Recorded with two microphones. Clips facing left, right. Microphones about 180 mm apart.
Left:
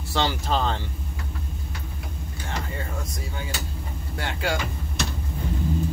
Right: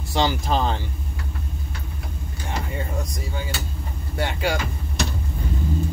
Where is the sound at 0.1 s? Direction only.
15° right (ahead or behind).